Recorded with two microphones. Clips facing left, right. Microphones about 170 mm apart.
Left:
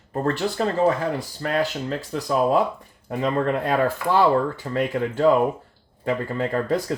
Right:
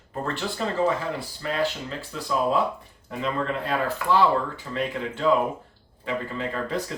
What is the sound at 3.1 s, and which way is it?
Speech, 50° left (ahead or behind).